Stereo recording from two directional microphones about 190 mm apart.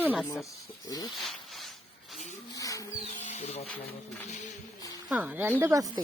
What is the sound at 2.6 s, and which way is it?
Music, 20° left (ahead or behind).